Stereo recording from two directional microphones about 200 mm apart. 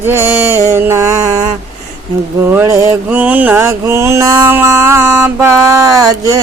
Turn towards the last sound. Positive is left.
turn(degrees=-15)  # may be behind; listen again after turning